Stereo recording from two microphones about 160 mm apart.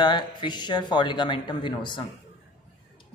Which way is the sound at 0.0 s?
30° left (ahead or behind).